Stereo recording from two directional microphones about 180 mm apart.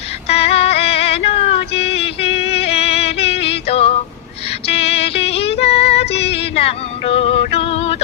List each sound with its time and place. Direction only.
0.3 s music: 35° left (ahead or behind)
4.6 s female singing: 35° left (ahead or behind)